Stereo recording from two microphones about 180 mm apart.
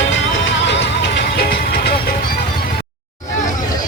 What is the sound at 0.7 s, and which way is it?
Music, 80° left.